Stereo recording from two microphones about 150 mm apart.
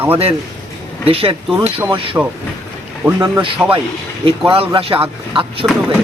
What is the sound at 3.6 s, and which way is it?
Speech, 15° right (ahead or behind).